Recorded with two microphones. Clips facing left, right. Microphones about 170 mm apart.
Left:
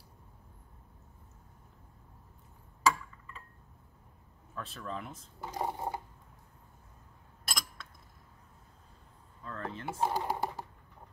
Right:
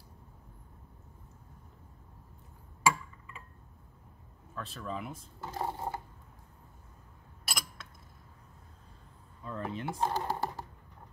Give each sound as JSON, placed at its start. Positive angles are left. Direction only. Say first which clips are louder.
{"t": 2.8, "sound": "a sound", "louder": "even", "side_deg": -10}
{"t": 4.6, "sound": "speech", "louder": "right 1 dB", "side_deg": 0}
{"t": 5.4, "sound": "speech", "louder": "left 1 dB", "side_deg": 15}
{"t": 7.4, "sound": "mechanisms", "louder": "even", "side_deg": -5}
{"t": 9.4, "sound": "a sound", "louder": "right 3 dB", "side_deg": -10}
{"t": 9.9, "sound": "speech", "louder": "left 2 dB", "side_deg": 10}